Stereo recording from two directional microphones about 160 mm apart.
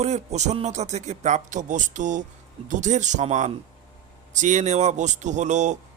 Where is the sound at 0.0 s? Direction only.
45° right (ahead or behind).